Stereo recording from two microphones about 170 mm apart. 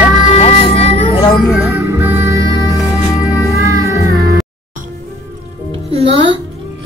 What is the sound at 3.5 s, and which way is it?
Music, 15° right (ahead or behind).